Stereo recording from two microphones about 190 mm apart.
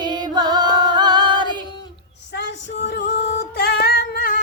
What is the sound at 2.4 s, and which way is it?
Music, 60° left (ahead or behind).